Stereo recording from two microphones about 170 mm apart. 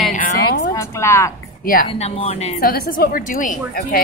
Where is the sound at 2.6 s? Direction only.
60° left (ahead or behind).